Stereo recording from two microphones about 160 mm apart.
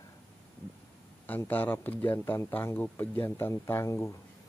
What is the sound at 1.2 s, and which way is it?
Speech, 10° left (ahead or behind).